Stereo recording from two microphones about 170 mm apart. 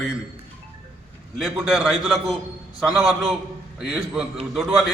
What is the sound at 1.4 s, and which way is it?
Speech, 5° right (ahead or behind).